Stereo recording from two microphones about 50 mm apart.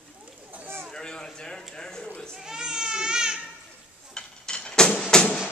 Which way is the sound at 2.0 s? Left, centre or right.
Left.